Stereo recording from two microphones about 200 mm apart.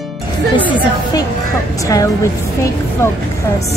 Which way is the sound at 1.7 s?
15° left (ahead or behind).